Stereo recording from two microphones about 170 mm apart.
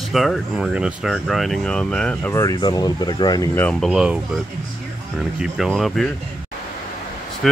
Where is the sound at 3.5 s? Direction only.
5° left (ahead or behind).